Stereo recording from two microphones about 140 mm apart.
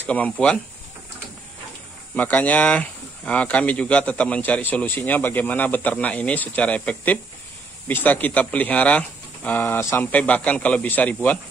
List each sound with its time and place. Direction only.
0.0 s speech: 10° left (ahead or behind)
2.1 s speech: 10° left (ahead or behind)